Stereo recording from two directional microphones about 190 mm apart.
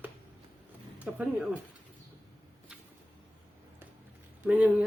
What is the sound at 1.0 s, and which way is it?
Speech, 10° right (ahead or behind).